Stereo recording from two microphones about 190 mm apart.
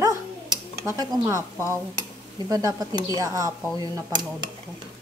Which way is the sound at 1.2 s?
15° right (ahead or behind).